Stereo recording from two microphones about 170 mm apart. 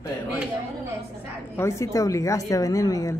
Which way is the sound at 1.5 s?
15° left (ahead or behind).